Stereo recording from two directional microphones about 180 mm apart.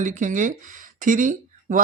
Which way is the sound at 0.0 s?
45° right (ahead or behind).